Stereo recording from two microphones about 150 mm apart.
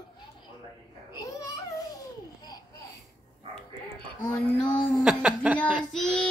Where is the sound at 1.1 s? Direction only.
25° left (ahead or behind).